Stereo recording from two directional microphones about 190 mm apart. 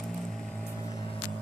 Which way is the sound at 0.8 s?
20° left (ahead or behind).